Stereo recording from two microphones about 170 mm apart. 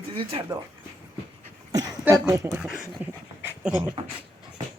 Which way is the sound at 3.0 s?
10° right (ahead or behind).